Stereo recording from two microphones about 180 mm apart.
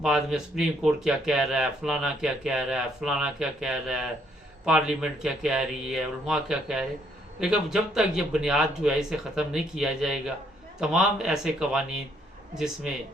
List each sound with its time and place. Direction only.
0.0 s speech: 5° right (ahead or behind)